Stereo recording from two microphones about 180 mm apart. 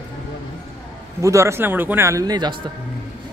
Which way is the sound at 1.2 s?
15° right (ahead or behind).